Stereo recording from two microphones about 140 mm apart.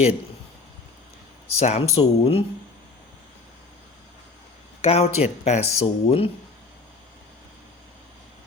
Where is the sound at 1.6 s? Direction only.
50° left (ahead or behind).